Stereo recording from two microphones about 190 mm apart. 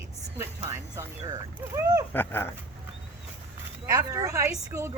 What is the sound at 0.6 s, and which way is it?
A woman's voice, 15° right (ahead or behind).